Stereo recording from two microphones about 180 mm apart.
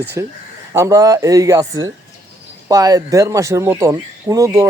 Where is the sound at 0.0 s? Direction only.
15° right (ahead or behind).